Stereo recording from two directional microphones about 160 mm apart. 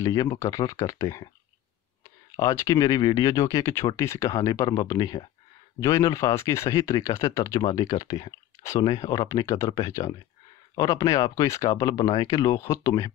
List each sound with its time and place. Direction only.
0.0 s speech: 20° left (ahead or behind)
2.3 s speech: 20° left (ahead or behind)